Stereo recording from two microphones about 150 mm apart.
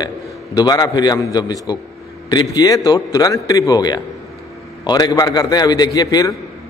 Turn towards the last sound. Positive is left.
turn(degrees=25)  # may be behind; listen again after turning